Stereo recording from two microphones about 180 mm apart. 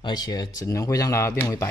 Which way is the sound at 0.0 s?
20° left (ahead or behind).